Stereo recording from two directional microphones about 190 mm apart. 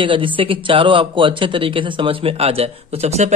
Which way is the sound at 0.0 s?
25° right (ahead or behind).